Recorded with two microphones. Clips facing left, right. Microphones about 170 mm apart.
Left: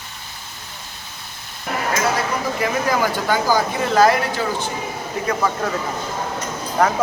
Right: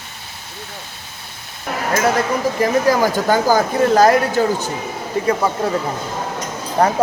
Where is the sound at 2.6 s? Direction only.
40° right (ahead or behind).